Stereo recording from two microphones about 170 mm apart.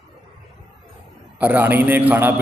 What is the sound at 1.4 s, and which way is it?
Speech, 10° right (ahead or behind).